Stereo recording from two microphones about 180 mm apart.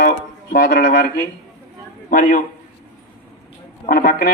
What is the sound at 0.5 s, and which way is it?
Speech, 55° left (ahead or behind).